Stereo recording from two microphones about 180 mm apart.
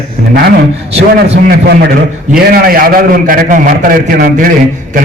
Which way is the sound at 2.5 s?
55° right (ahead or behind).